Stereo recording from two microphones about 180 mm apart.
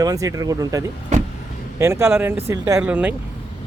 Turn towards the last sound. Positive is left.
turn(degrees=-10)  # may be behind; listen again after turning